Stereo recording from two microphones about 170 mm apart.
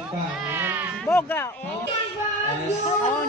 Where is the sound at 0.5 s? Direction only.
10° right (ahead or behind).